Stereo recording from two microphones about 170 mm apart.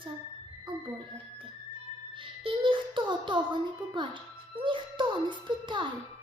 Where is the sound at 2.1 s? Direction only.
30° right (ahead or behind).